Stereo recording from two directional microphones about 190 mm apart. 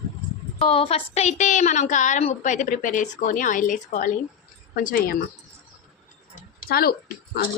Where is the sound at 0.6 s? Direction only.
30° left (ahead or behind); by 5.2 s 50° left (ahead or behind).